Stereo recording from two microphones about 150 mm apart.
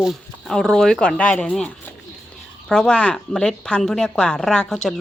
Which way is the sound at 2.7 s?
5° left (ahead or behind).